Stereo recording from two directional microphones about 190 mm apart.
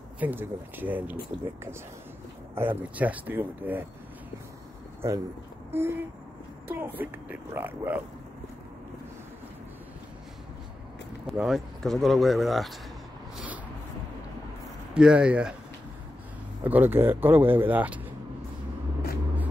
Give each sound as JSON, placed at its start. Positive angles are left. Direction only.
{"t": 0.2, "sound": "speech", "side_deg": -10}
{"t": 5.0, "sound": "speech", "side_deg": -15}
{"t": 11.2, "sound": "speech", "side_deg": 0}
{"t": 15.0, "sound": "speech", "side_deg": -5}
{"t": 16.6, "sound": "speech", "side_deg": -10}